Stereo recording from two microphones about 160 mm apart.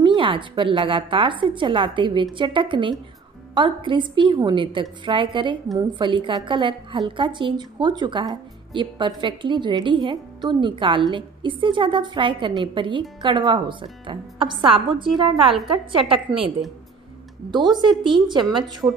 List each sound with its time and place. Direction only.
0.0 s a woman's voice: 30° right (ahead or behind)
17.5 s a woman's voice: 25° right (ahead or behind)